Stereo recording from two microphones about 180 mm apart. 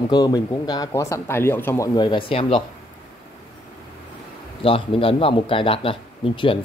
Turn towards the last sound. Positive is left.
turn(degrees=30)  # may be behind; listen again after turning